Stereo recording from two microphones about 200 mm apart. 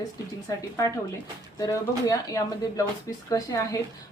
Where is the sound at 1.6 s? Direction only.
15° left (ahead or behind).